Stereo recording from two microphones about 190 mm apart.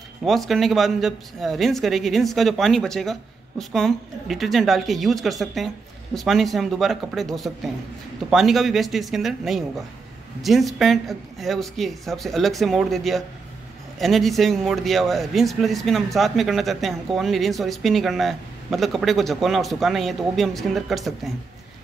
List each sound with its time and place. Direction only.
0.2 s speech: centre (ahead or behind)